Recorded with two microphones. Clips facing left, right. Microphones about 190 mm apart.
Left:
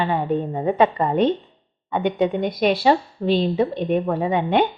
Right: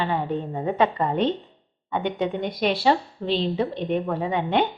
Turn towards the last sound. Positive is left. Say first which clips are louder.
# left 4 dB
turn(degrees=15)  # may be behind; listen again after turning